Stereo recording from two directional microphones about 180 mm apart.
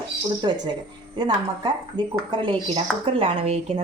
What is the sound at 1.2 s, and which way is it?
Speech, 25° right (ahead or behind).